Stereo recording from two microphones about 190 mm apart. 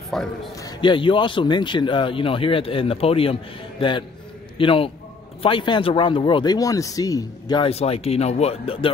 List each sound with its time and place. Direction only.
0.1 s a man's voice: centre (ahead or behind)
0.6 s speech: 20° left (ahead or behind)
4.6 s speech: 30° left (ahead or behind)